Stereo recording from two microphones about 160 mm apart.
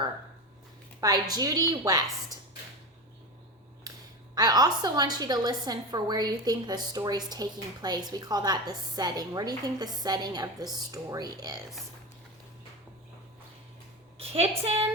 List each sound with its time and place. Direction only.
1.0 s a woman's voice: 25° right (ahead or behind)
4.4 s a woman's voice: 25° right (ahead or behind)
14.2 s a woman's voice: 40° right (ahead or behind)